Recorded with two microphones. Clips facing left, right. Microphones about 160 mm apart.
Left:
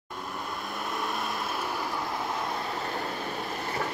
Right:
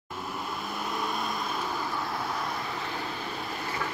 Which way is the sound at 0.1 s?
5° right (ahead or behind).